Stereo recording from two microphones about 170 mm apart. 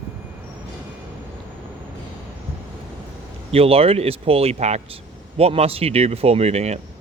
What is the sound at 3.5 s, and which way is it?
Speech, 35° right (ahead or behind).